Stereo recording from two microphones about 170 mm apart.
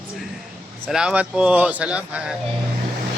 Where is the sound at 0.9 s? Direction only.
5° right (ahead or behind).